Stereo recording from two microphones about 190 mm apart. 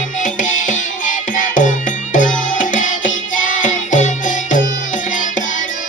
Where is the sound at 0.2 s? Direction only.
40° left (ahead or behind).